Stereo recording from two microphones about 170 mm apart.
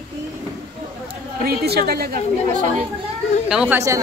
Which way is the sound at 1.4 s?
65° right (ahead or behind).